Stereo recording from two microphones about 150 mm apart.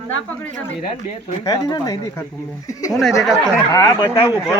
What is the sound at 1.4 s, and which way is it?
Speech, 25° left (ahead or behind).